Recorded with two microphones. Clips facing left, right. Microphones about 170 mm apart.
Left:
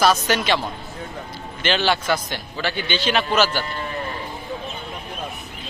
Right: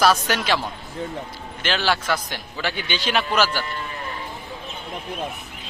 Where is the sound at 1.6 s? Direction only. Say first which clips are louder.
Left 2 dB; 5° right (ahead or behind).